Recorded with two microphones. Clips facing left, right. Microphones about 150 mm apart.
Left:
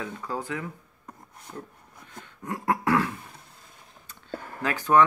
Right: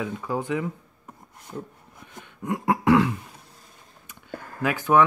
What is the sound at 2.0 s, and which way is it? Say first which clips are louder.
Throat clearing: right 3 dB; 20° right (ahead or behind).